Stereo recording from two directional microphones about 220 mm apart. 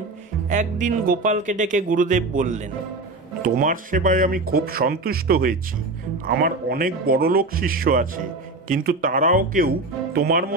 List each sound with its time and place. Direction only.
0.5 s speech: 35° right (ahead or behind)